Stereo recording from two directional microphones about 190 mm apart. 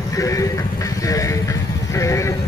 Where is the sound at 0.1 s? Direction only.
15° left (ahead or behind).